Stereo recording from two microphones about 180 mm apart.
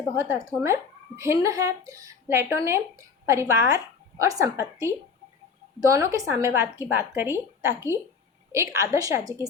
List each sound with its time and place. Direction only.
0.6 s speech: 15° right (ahead or behind)